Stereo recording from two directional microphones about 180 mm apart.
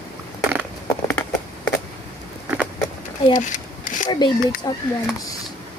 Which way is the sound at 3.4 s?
45° left (ahead or behind).